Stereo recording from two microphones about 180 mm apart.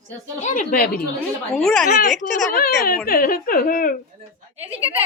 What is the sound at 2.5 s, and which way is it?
Speech, 55° left (ahead or behind).